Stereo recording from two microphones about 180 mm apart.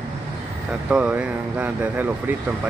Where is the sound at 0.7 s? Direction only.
5° right (ahead or behind).